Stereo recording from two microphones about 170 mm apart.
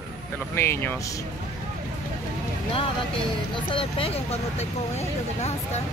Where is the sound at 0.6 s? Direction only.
15° left (ahead or behind).